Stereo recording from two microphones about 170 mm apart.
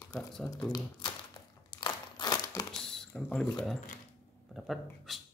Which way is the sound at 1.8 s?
25° left (ahead or behind).